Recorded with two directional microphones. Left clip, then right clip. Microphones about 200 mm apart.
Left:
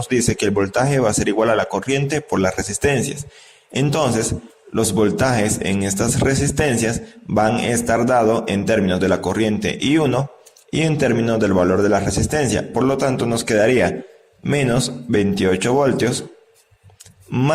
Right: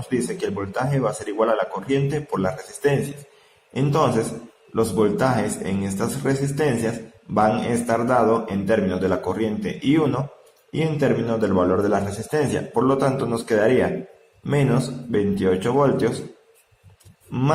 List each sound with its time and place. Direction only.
0.1 s a man's voice: 35° left (ahead or behind)